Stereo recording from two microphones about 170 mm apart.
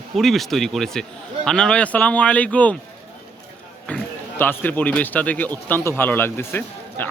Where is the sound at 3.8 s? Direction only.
10° left (ahead or behind).